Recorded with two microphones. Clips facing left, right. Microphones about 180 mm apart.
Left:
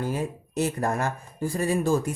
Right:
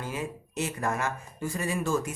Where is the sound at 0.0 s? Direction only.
35° left (ahead or behind).